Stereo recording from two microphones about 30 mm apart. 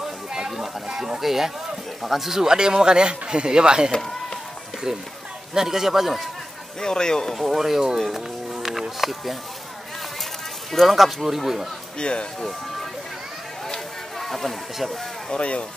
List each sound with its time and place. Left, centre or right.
0.0 s a sound: centre
1.2 s a man's voice: centre
2.4 s a man's voice: right; by 6.2 s centre
6.8 s speech: left
7.3 s a man's voice: centre
8.8 s speech: centre
10.7 s speech: centre
11.1 s a man's voice: centre
12.0 s speech: left
14.2 s speech: centre
15.3 s speech: left